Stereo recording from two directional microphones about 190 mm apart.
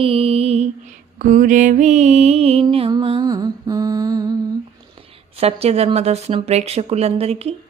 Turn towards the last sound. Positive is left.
turn(degrees=-30)  # may be behind; listen again after turning